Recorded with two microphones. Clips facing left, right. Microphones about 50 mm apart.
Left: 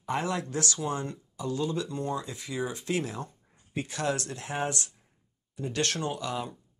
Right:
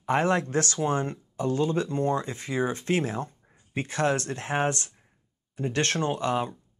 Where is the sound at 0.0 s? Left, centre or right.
Right.